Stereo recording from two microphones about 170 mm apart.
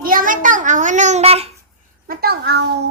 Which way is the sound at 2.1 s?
65° right (ahead or behind).